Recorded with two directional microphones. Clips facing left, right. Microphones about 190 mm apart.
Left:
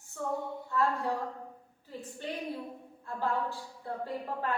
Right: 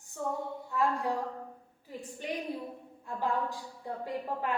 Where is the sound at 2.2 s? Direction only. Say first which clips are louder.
Right 1 dB; 15° right (ahead or behind).